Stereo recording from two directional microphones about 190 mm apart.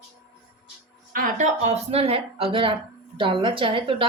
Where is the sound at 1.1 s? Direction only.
45° right (ahead or behind).